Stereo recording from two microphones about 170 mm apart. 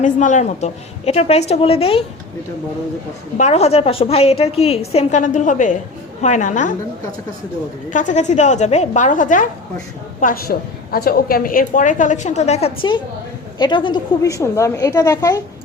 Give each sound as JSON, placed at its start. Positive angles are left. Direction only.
{"t": 0.0, "sound": "a woman's voice", "side_deg": 45}
{"t": 3.3, "sound": "a woman's voice", "side_deg": 40}
{"t": 7.9, "sound": "a woman's voice", "side_deg": 50}